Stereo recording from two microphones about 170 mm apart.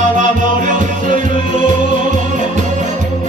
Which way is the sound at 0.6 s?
45° right (ahead or behind).